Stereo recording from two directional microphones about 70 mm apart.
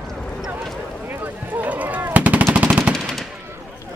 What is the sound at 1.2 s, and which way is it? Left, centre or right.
Gunshot, right.